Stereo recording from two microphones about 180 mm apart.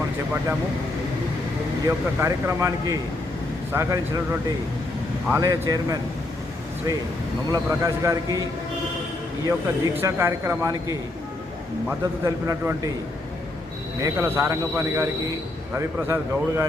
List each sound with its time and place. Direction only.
1.9 s a man's voice: 15° right (ahead or behind)
7.5 s a man's voice: 15° right (ahead or behind)
14.0 s speech: 15° right (ahead or behind)